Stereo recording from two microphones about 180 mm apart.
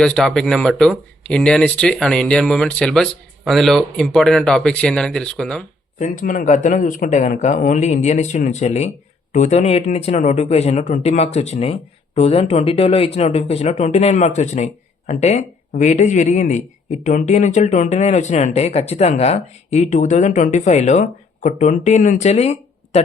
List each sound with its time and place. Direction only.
0.0 s speech: 5° left (ahead or behind)
6.0 s speech: 45° left (ahead or behind)